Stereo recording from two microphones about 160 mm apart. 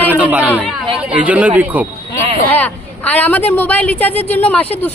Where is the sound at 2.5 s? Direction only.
10° left (ahead or behind).